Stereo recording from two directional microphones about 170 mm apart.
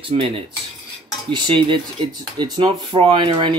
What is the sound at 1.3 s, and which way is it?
Speech, 30° right (ahead or behind).